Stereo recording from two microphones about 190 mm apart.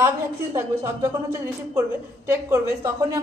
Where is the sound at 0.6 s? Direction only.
15° right (ahead or behind).